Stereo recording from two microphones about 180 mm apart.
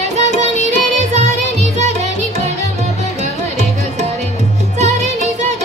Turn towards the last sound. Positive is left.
turn(degrees=-40)  # may be behind; listen again after turning